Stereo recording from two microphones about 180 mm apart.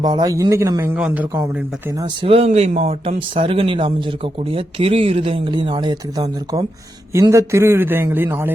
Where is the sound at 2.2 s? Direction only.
35° right (ahead or behind).